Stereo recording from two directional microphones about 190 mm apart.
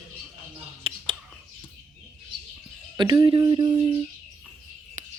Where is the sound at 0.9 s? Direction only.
30° right (ahead or behind).